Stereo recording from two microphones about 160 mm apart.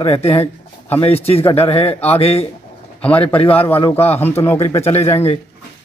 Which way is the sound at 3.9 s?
40° left (ahead or behind).